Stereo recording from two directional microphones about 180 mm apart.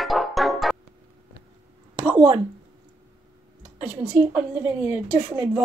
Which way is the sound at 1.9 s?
5° right (ahead or behind).